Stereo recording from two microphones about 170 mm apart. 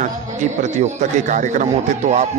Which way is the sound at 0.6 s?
45° right (ahead or behind).